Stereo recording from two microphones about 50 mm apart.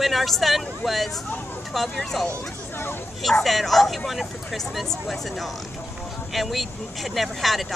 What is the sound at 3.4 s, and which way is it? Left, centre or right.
Speech, centre.